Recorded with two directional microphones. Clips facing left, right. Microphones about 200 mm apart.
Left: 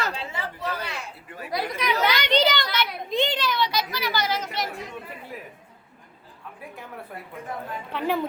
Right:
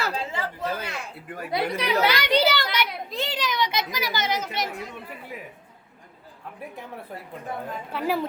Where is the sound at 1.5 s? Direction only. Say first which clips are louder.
Right 1 dB; 35° right (ahead or behind).